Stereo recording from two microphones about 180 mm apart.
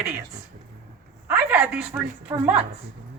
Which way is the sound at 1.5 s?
5° right (ahead or behind).